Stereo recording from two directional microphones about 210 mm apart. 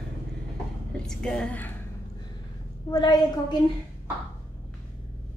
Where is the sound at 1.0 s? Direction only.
5° left (ahead or behind).